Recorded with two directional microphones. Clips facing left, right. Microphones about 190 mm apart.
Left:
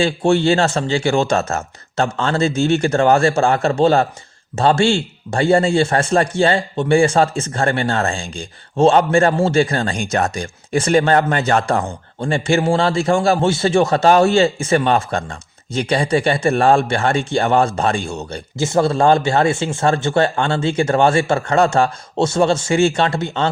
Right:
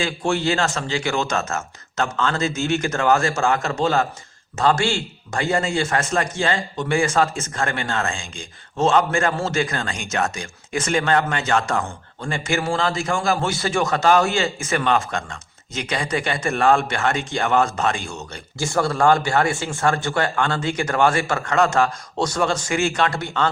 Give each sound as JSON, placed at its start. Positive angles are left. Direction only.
{"t": 0.0, "sound": "speech", "side_deg": 30}
{"t": 18.5, "sound": "speech", "side_deg": 20}